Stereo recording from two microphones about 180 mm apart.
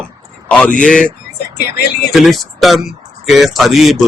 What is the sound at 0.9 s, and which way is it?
Speech, 5° left (ahead or behind).